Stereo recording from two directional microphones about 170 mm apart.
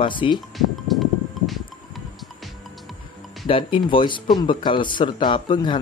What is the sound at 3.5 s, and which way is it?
Speech, 30° left (ahead or behind).